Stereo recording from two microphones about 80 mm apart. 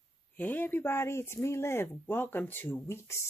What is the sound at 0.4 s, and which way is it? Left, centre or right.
Speech, left.